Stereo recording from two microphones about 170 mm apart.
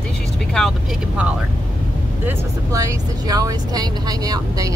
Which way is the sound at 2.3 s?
20° right (ahead or behind).